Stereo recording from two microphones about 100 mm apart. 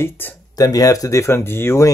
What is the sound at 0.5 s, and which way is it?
Speech, 35° left (ahead or behind).